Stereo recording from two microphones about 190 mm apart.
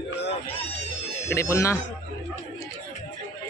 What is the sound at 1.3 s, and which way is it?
Speech, 15° left (ahead or behind).